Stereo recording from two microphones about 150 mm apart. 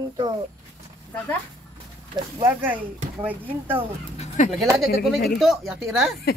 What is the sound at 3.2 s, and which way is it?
Speech, 10° right (ahead or behind).